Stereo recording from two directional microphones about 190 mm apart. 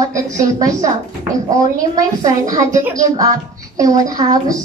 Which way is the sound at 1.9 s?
20° right (ahead or behind).